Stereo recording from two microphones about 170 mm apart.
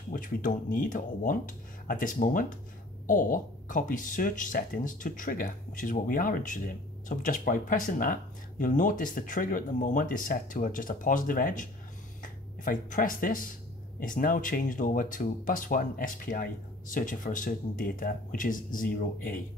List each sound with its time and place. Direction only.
0.1 s speech: 50° left (ahead or behind)